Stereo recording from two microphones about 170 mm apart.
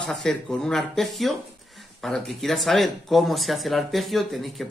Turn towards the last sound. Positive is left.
turn(degrees=0)  # may be behind; listen again after turning